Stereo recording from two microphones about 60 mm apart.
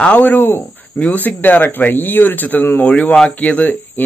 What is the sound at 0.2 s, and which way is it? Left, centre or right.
Speech, left.